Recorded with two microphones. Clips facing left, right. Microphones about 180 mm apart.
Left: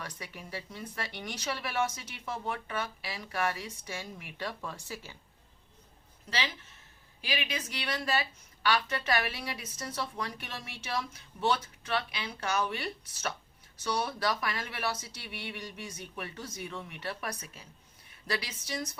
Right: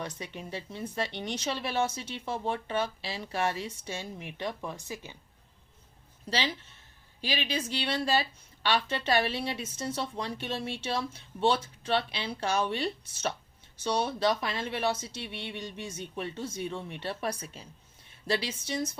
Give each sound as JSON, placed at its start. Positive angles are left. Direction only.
{"t": 0.0, "sound": "a woman's voice", "side_deg": -25}
{"t": 6.3, "sound": "a woman's voice", "side_deg": -30}